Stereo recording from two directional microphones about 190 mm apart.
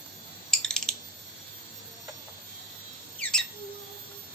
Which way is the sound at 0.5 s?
Centre (ahead or behind).